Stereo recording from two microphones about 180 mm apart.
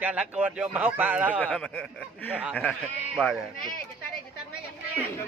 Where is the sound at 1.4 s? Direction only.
5° left (ahead or behind).